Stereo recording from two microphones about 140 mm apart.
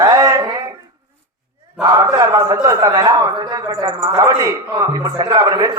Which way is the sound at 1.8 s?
30° right (ahead or behind).